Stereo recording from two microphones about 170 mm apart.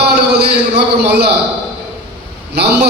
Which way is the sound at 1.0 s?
75° right (ahead or behind).